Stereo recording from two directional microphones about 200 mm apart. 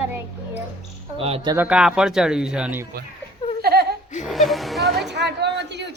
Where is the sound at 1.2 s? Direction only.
30° right (ahead or behind).